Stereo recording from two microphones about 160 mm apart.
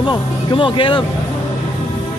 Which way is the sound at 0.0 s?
30° left (ahead or behind).